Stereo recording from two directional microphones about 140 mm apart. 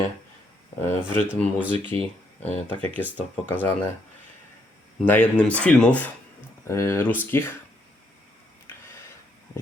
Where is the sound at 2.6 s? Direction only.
10° left (ahead or behind).